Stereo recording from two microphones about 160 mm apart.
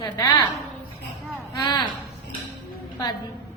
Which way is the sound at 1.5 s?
25° left (ahead or behind).